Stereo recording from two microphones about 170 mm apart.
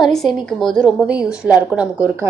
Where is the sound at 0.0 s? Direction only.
Centre (ahead or behind).